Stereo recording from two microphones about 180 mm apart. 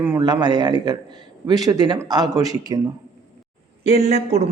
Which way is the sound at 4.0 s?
35° right (ahead or behind).